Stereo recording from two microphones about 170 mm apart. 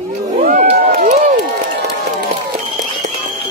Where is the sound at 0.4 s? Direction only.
60° right (ahead or behind).